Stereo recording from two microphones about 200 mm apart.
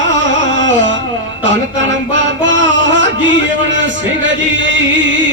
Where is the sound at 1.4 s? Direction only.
65° right (ahead or behind).